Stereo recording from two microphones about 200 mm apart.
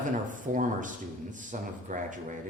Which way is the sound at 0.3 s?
40° right (ahead or behind).